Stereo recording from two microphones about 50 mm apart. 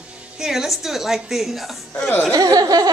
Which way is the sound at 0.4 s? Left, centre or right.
Centre.